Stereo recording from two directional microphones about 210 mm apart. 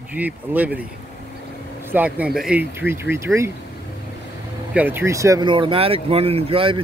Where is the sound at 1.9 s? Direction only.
5° right (ahead or behind).